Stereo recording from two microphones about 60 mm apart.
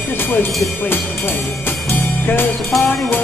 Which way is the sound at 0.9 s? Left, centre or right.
Left.